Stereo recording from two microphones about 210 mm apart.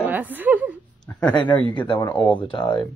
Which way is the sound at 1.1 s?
15° left (ahead or behind).